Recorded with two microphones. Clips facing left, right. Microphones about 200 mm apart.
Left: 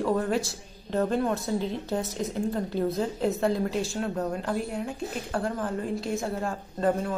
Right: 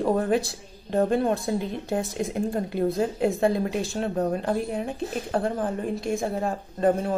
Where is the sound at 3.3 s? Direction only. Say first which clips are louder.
Right 2 dB; 15° right (ahead or behind).